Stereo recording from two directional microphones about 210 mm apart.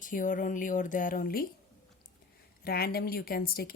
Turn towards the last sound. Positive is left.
turn(degrees=45)  # may be behind; listen again after turning